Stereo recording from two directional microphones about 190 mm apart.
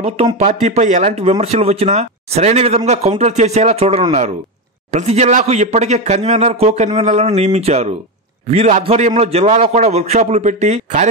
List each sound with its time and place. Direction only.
0.4 s speech: 35° right (ahead or behind)